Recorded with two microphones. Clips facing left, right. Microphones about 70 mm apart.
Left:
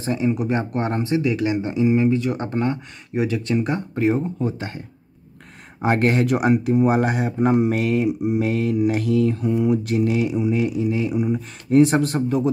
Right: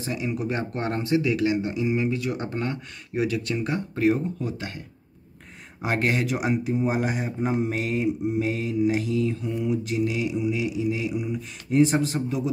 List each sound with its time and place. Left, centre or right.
0.0 s speech: left
0.3 s speech: left
5.8 s speech: left